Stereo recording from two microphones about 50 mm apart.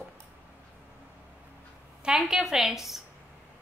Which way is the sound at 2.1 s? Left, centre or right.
Centre.